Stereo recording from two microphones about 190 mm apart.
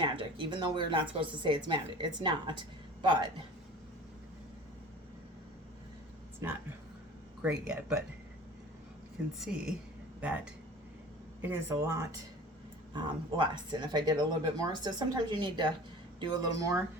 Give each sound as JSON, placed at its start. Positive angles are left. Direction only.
{"t": 0.0, "sound": "a man's voice", "side_deg": -25}
{"t": 6.4, "sound": "speech", "side_deg": -15}
{"t": 9.4, "sound": "a woman's voice", "side_deg": -5}